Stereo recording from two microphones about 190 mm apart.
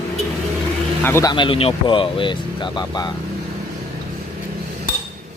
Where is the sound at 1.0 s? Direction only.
10° left (ahead or behind).